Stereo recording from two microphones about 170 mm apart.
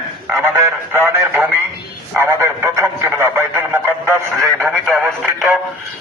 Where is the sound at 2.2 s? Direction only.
15° right (ahead or behind).